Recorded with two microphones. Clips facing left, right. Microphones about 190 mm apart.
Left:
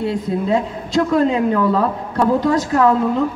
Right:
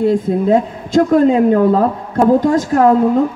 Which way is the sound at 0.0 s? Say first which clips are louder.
Right 6 dB; 50° right (ahead or behind).